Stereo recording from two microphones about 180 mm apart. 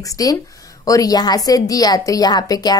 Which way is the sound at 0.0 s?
20° left (ahead or behind).